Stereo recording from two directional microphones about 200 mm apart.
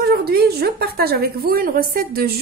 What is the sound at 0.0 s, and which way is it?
A woman's voice, 55° right (ahead or behind).